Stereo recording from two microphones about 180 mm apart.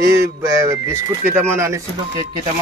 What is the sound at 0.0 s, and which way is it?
Speech, 15° right (ahead or behind).